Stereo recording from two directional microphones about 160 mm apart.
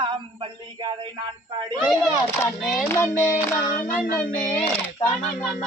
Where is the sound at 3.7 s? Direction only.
60° left (ahead or behind).